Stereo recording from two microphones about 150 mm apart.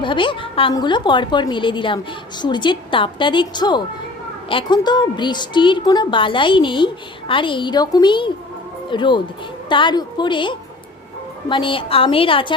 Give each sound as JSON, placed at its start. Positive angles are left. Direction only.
{"t": 0.0, "sound": "a woman's voice", "side_deg": 35}